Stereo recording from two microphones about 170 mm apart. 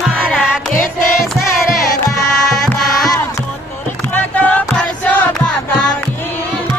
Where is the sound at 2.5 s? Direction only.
Centre (ahead or behind).